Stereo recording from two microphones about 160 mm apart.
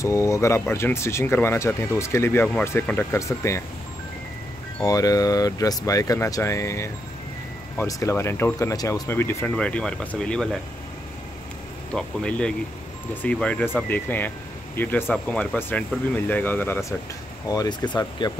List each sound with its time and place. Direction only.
0.0 s speech: 20° left (ahead or behind)
4.8 s speech: 20° left (ahead or behind); by 10.6 s 5° left (ahead or behind)
11.9 s speech: 5° left (ahead or behind)
17.5 s speech: 25° left (ahead or behind)